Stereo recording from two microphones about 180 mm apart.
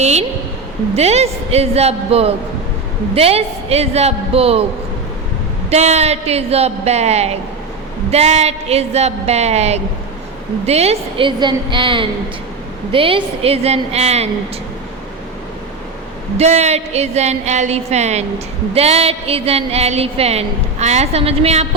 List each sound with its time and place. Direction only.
0.0 s speech: 35° right (ahead or behind)
5.7 s a woman's voice: 35° right (ahead or behind)
16.4 s speech: 35° right (ahead or behind)